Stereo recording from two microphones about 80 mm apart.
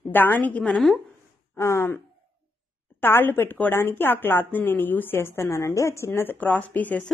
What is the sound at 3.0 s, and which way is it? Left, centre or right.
A woman's voice, left.